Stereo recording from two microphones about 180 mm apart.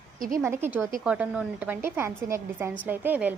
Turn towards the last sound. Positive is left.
turn(degrees=-10)  # may be behind; listen again after turning